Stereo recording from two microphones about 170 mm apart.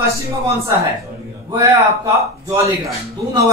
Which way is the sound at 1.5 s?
15° right (ahead or behind).